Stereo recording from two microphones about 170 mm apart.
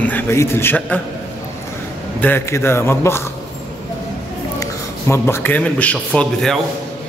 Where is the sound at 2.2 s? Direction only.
15° left (ahead or behind).